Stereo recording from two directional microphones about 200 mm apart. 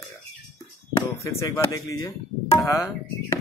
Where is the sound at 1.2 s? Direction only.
15° left (ahead or behind).